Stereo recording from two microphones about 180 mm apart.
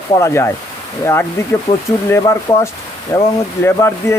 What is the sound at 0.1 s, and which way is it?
Speech, 15° left (ahead or behind).